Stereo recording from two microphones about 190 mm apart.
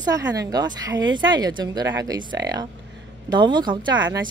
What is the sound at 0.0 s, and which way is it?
Speech, 20° right (ahead or behind).